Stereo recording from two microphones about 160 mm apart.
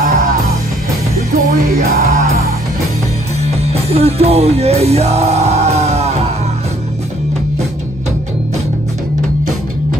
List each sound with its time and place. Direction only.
1.3 s music: 70° right (ahead or behind)
3.4 s music: 40° right (ahead or behind)